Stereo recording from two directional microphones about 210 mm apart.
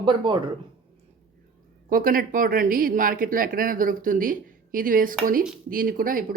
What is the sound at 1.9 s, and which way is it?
Speech, 40° right (ahead or behind).